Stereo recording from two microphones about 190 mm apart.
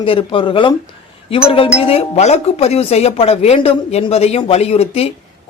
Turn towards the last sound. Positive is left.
turn(degrees=30)  # may be behind; listen again after turning